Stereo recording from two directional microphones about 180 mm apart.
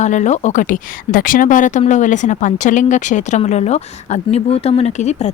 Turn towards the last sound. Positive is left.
turn(degrees=40)  # may be behind; listen again after turning